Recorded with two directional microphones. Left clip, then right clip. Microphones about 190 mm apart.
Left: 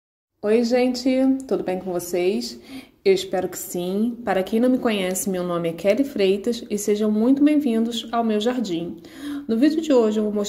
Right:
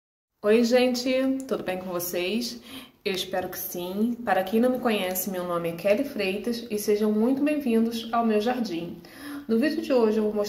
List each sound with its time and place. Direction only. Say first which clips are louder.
0.4 s a woman's voice: left 1 dB; 20° left (ahead or behind); by 10.2 s 40° left (ahead or behind)